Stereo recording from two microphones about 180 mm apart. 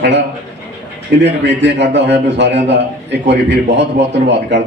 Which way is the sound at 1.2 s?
75° right (ahead or behind).